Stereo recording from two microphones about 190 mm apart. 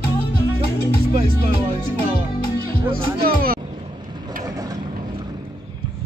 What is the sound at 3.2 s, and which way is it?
Speech, 50° right (ahead or behind).